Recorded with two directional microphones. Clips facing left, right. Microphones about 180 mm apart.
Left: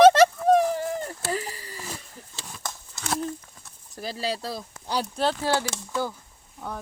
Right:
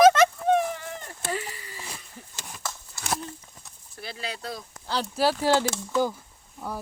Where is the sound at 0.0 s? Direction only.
35° left (ahead or behind).